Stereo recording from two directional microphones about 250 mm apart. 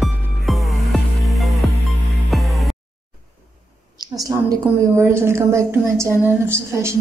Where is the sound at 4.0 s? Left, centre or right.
Centre.